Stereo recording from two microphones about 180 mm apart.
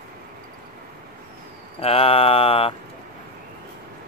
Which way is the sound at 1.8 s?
35° left (ahead or behind).